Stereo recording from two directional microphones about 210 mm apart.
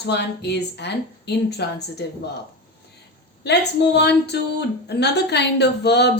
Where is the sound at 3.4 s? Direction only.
55° left (ahead or behind).